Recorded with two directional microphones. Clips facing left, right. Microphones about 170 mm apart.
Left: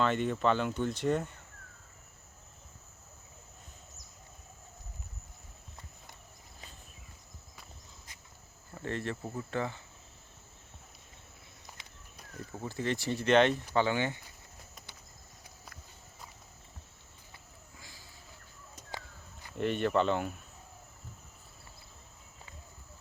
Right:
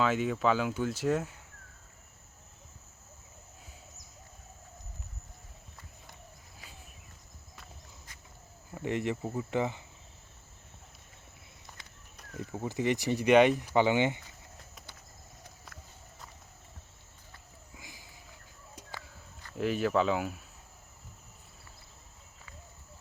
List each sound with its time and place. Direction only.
0.0 s speech: 5° right (ahead or behind)
8.7 s speech: 15° right (ahead or behind)
12.5 s speech: 15° right (ahead or behind)
17.7 s sniff: 15° right (ahead or behind)
18.9 s a sound: 15° left (ahead or behind)
19.5 s speech: 5° right (ahead or behind)